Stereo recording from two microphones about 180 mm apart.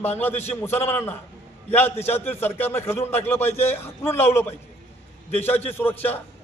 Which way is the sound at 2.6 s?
10° left (ahead or behind).